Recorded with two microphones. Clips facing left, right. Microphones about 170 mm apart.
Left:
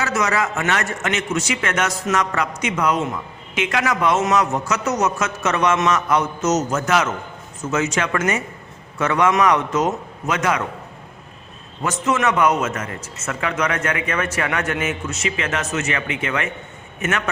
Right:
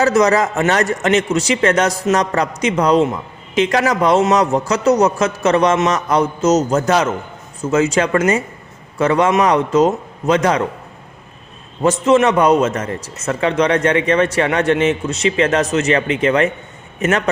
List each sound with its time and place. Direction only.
0.0 s a man's voice: 35° right (ahead or behind)
11.8 s a man's voice: 30° right (ahead or behind)